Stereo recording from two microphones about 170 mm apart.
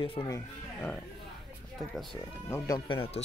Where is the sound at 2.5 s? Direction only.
25° left (ahead or behind).